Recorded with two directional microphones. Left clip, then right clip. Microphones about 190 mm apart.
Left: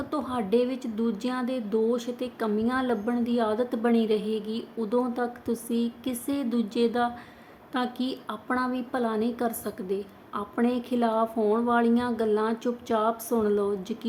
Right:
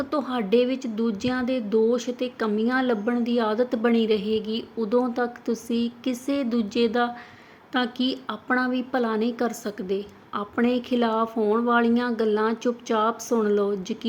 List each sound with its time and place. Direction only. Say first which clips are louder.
0.1 s speech: right 2 dB; 15° right (ahead or behind)